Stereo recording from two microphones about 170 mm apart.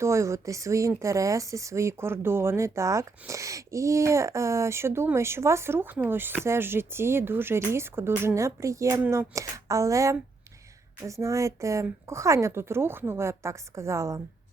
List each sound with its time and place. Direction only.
0.0 s speech: 15° right (ahead or behind)